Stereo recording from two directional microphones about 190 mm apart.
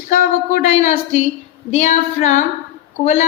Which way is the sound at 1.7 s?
40° left (ahead or behind).